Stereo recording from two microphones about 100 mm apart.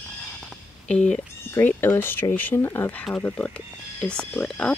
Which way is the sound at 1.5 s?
20° left (ahead or behind).